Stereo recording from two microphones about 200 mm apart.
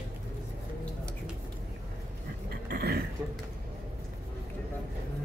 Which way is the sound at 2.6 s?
50° right (ahead or behind).